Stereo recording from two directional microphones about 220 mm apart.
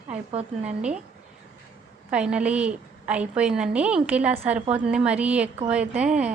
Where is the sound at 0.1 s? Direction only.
30° right (ahead or behind).